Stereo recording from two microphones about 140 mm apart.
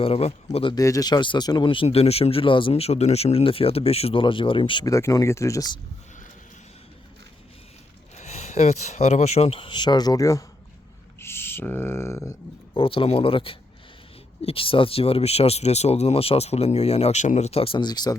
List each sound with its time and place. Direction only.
0.0 s speech: 45° left (ahead or behind)
0.8 s speech: 25° left (ahead or behind)
4.9 s speech: 20° left (ahead or behind)
8.1 s speech: 55° left (ahead or behind); by 10.4 s 25° left (ahead or behind)
11.2 s a sound: 15° left (ahead or behind)
12.7 s speech: 40° left (ahead or behind)